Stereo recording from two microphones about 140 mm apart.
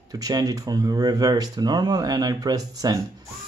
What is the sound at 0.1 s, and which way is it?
Speech, 25° right (ahead or behind).